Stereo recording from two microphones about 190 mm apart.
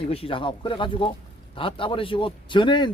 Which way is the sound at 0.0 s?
30° left (ahead or behind).